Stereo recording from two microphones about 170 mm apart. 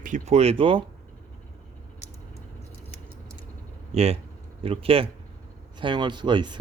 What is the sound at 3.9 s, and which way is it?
Speech, 35° right (ahead or behind).